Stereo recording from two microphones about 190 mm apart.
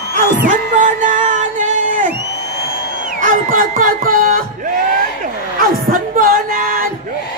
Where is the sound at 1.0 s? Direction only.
40° right (ahead or behind).